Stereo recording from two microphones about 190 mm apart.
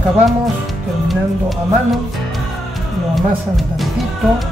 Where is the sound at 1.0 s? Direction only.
Centre (ahead or behind).